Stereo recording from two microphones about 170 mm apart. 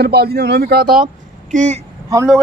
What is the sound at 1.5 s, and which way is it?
Speech, 45° right (ahead or behind).